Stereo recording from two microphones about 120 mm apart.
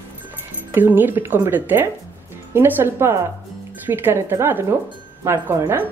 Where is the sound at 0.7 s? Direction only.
15° right (ahead or behind).